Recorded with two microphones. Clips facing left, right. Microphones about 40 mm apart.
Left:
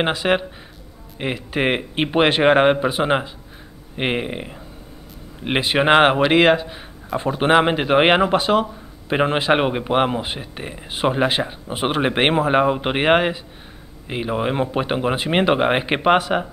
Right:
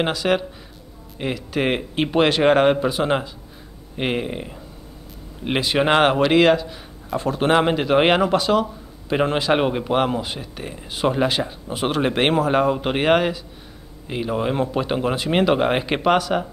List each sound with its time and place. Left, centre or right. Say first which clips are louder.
0.0 s a man's voice: left 1 dB; left